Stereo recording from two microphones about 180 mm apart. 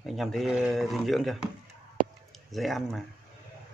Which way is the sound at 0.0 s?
Centre (ahead or behind).